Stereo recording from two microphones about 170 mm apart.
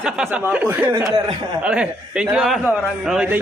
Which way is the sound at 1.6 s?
5° right (ahead or behind).